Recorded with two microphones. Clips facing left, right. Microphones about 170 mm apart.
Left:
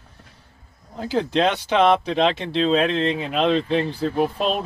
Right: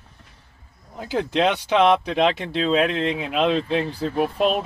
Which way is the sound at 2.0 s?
30° left (ahead or behind).